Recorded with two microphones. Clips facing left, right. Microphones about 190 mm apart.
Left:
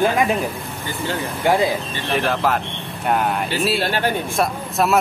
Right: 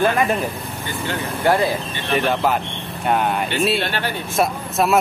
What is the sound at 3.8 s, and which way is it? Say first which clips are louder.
Speech: left 3 dB; 45° left (ahead or behind).